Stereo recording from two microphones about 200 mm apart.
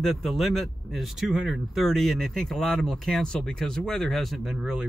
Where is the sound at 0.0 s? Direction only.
Centre (ahead or behind).